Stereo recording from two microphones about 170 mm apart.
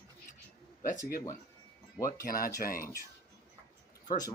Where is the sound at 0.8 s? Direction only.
55° left (ahead or behind).